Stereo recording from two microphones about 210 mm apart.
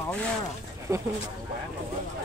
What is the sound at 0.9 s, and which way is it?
Speech, 15° right (ahead or behind).